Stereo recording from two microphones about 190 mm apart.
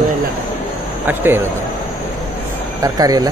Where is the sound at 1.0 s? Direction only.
10° right (ahead or behind).